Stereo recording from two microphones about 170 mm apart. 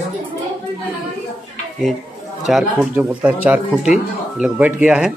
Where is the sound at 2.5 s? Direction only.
Centre (ahead or behind).